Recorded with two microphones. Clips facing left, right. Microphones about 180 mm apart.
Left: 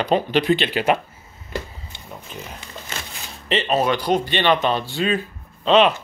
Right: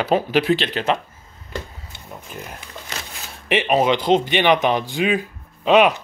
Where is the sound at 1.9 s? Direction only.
5° right (ahead or behind).